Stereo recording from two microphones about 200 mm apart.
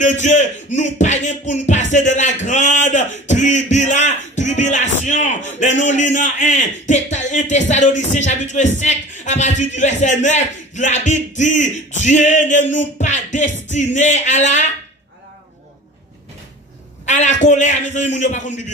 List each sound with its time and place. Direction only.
0.0 s music: 35° left (ahead or behind)
2.4 s a sound: 35° left (ahead or behind)
8.1 s speech: 35° left (ahead or behind)
17.0 s music: 35° left (ahead or behind)